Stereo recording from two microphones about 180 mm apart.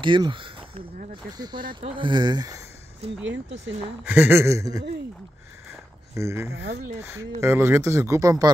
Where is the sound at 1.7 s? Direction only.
30° right (ahead or behind).